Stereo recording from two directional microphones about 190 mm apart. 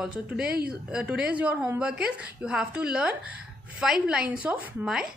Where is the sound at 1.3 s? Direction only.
10° right (ahead or behind).